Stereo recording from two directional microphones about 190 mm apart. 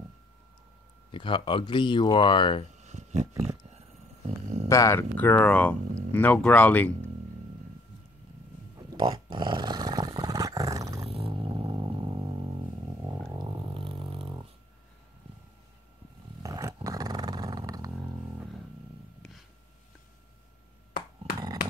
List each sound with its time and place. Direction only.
1.1 s speech: 25° left (ahead or behind)
2.8 s a sound: 35° right (ahead or behind)
4.6 s speech: 15° left (ahead or behind)
8.7 s roar: 25° right (ahead or behind)
11.1 s vehicle: 30° right (ahead or behind)
13.3 s a sound: 20° right (ahead or behind)
16.4 s roar: 15° right (ahead or behind)
21.3 s dog: 50° left (ahead or behind)